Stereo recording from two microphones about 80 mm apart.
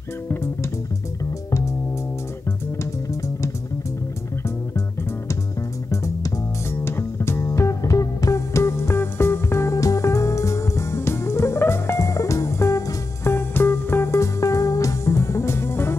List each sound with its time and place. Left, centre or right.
0.3 s music: left
2.8 s music: left
5.9 s music: left